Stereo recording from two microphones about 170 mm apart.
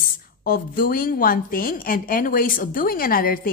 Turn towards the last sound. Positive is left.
turn(degrees=55)  # may be behind; listen again after turning